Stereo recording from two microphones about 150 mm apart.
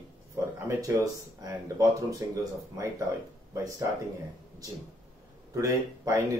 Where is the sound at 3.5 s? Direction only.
20° right (ahead or behind).